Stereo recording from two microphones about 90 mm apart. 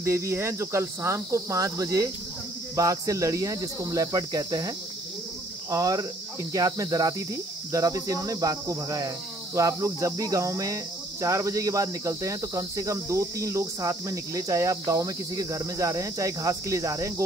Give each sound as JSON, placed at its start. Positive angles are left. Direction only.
{"t": 0.0, "sound": "cricket", "side_deg": -30}
{"t": 5.7, "sound": "speech", "side_deg": -40}
{"t": 6.5, "sound": "cricket", "side_deg": -40}